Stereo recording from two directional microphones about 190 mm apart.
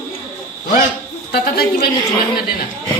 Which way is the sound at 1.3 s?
55° left (ahead or behind).